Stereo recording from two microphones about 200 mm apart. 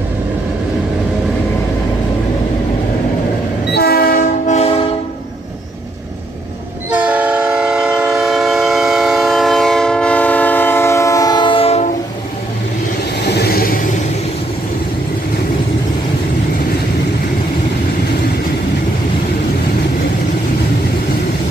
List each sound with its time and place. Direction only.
3.7 s train: 50° left (ahead or behind); by 4.7 s 35° left (ahead or behind)
7.1 s train: 5° right (ahead or behind); by 11.8 s 30° left (ahead or behind)
13.2 s vehicle: 55° left (ahead or behind)